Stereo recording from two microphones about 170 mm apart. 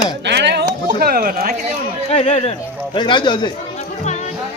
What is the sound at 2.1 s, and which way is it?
Speech, 40° left (ahead or behind).